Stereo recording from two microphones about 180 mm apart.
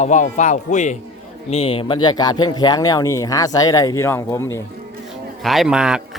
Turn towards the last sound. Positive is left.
turn(degrees=-5)  # may be behind; listen again after turning